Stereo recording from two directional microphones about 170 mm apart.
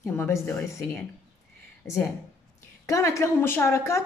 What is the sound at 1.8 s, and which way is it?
A woman's voice, 15° left (ahead or behind).